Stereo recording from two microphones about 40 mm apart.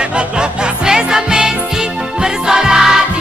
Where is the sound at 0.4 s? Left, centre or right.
Centre.